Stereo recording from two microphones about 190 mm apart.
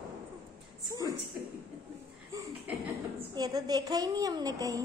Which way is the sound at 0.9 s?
20° right (ahead or behind).